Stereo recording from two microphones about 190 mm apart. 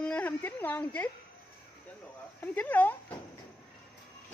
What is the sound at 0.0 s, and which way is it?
Speech, 5° left (ahead or behind).